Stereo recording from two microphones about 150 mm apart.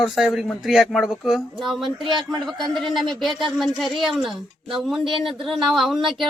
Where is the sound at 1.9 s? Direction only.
35° right (ahead or behind).